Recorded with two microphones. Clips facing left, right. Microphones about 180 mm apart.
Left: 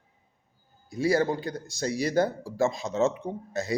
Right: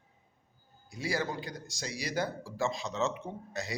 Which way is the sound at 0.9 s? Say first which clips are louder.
Left 10 dB; 50° left (ahead or behind).